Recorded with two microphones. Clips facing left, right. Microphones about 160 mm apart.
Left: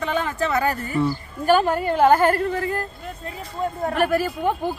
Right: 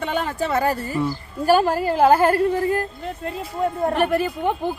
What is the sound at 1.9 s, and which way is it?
Speech, 30° right (ahead or behind).